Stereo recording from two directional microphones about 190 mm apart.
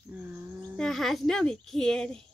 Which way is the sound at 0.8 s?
Centre (ahead or behind).